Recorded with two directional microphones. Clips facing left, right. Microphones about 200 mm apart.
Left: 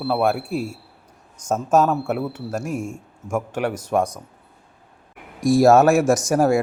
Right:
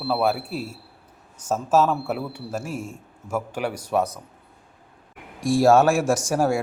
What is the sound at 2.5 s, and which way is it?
Speech, 5° right (ahead or behind).